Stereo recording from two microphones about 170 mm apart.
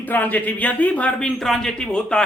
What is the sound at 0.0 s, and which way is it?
Speech, 10° left (ahead or behind).